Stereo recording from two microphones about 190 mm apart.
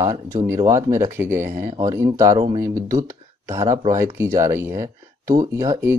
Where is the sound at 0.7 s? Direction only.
15° right (ahead or behind).